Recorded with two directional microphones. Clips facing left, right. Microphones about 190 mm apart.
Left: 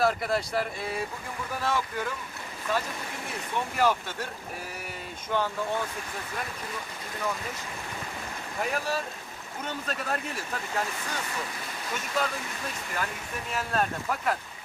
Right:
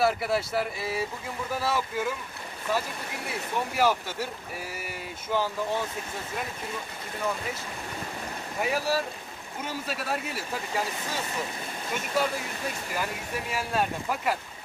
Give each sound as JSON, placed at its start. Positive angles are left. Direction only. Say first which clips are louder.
{"t": 0.0, "sound": "speech", "louder": "right 1 dB", "side_deg": -5}
{"t": 3.3, "sound": "speech", "louder": "right 2 dB", "side_deg": -10}
{"t": 5.3, "sound": "speech", "louder": "right 1 dB", "side_deg": -5}
{"t": 8.5, "sound": "speech", "louder": "right 3 dB", "side_deg": -5}
{"t": 12.9, "sound": "speech", "louder": "right 1 dB", "side_deg": -10}